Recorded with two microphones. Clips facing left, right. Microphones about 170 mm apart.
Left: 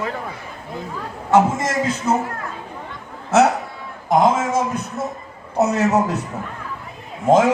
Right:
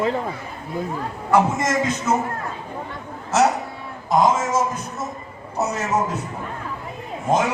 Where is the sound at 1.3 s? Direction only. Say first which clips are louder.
Left 2 dB; 30° left (ahead or behind).